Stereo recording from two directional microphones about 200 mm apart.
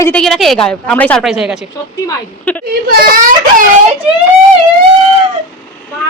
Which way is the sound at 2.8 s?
45° right (ahead or behind).